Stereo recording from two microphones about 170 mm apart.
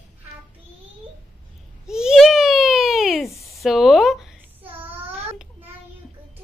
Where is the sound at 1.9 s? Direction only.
5° right (ahead or behind).